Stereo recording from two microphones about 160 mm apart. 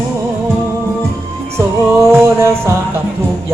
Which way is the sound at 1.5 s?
15° right (ahead or behind).